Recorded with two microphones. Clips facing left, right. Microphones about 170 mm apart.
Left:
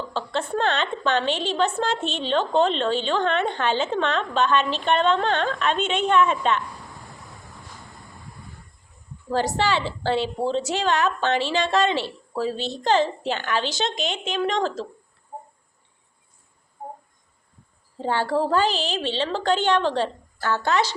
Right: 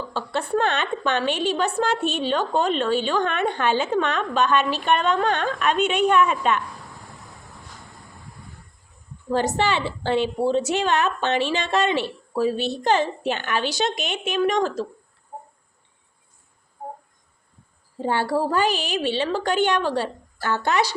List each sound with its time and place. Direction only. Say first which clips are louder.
0.1 s a woman's voice: right 3 dB; 10° right (ahead or behind)
9.3 s a woman's voice: right 1 dB; 20° right (ahead or behind)
18.0 s a woman's voice: even; 15° right (ahead or behind)